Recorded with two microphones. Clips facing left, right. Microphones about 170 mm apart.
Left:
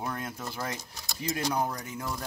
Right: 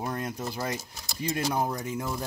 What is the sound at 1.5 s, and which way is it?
Speech, 25° right (ahead or behind).